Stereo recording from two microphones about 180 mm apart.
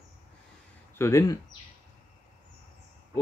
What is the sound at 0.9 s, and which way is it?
Speech, 15° left (ahead or behind).